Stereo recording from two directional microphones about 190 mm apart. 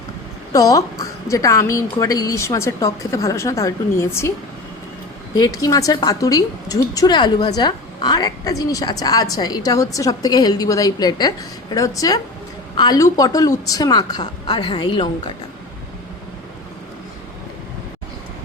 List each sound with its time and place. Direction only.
0.5 s a woman's voice: 20° left (ahead or behind)
5.3 s a woman's voice: 20° left (ahead or behind)